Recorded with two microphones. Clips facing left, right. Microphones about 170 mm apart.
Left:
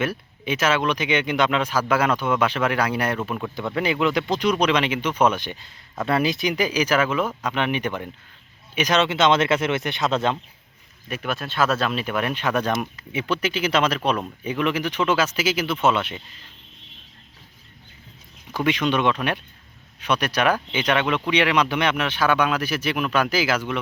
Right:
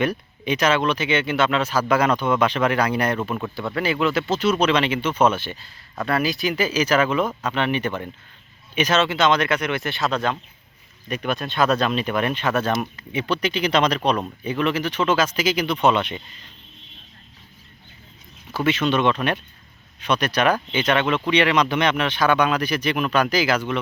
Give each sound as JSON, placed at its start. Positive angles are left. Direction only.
{"t": 0.0, "sound": "speech", "side_deg": 5}
{"t": 3.8, "sound": "speech", "side_deg": 15}
{"t": 11.1, "sound": "speech", "side_deg": 5}
{"t": 18.5, "sound": "speech", "side_deg": 15}